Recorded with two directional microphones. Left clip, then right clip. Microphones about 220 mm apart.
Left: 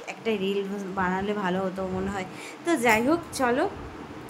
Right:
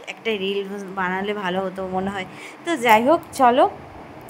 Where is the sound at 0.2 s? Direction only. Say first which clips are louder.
Right 4 dB; 25° right (ahead or behind).